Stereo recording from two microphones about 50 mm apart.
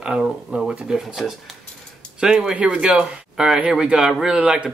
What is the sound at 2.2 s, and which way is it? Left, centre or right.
Speech, centre.